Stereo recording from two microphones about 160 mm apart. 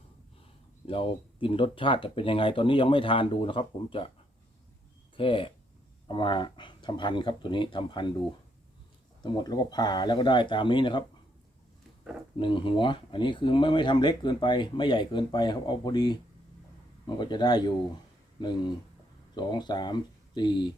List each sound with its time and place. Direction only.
0.9 s speech: 35° left (ahead or behind)
5.1 s speech: 30° left (ahead or behind)
9.2 s speech: 25° left (ahead or behind)
12.4 s speech: 30° left (ahead or behind)